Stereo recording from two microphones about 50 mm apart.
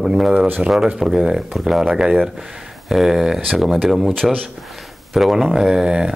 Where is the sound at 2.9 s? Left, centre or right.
Centre.